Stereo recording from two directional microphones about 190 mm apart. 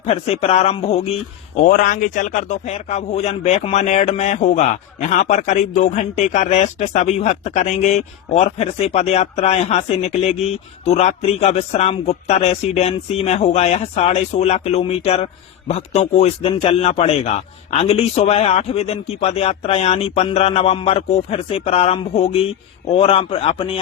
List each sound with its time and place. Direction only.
0.0 s a man's voice: 35° left (ahead or behind)
1.5 s a man's voice: 45° left (ahead or behind); by 23.8 s 30° left (ahead or behind)